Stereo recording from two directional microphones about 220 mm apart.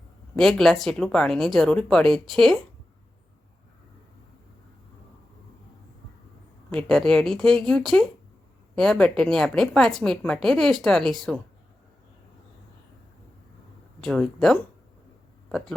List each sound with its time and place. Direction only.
0.3 s a woman's voice: centre (ahead or behind)
6.7 s a woman's voice: 5° left (ahead or behind)
14.0 s a woman's voice: 5° left (ahead or behind)